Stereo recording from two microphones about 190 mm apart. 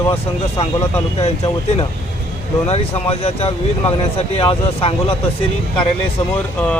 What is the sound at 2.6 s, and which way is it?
Speech, 35° left (ahead or behind).